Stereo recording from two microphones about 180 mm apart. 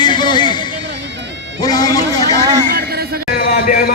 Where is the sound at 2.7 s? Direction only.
60° right (ahead or behind).